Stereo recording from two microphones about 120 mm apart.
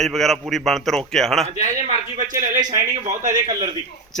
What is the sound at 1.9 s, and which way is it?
Speech, 90° right.